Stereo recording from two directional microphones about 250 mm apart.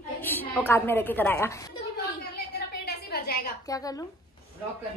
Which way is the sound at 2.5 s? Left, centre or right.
Left.